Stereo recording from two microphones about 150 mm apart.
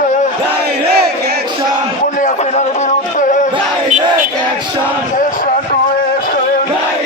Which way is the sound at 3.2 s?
60° left (ahead or behind).